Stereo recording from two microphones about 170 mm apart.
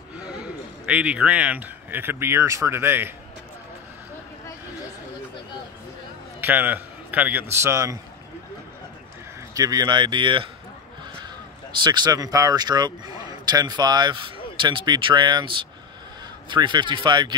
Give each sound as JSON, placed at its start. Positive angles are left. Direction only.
{"t": 0.2, "sound": "a man's voice", "side_deg": -5}
{"t": 6.4, "sound": "a man's voice", "side_deg": -10}
{"t": 9.5, "sound": "speech", "side_deg": -20}
{"t": 11.8, "sound": "speech", "side_deg": -25}